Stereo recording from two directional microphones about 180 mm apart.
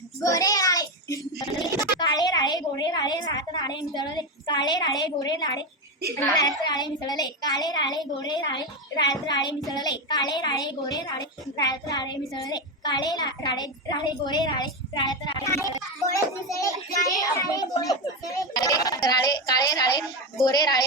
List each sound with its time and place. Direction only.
0.2 s child singing: 20° left (ahead or behind)
3.9 s a child's voice: 25° left (ahead or behind)
6.7 s a child's voice: 25° left (ahead or behind)